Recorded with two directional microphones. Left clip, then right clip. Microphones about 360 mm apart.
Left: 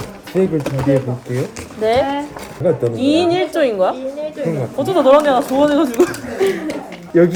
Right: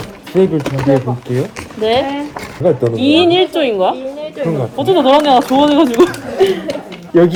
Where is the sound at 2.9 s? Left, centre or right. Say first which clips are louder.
Right 3 dB; centre.